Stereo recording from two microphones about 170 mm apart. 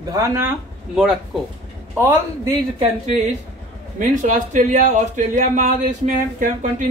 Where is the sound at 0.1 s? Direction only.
15° right (ahead or behind).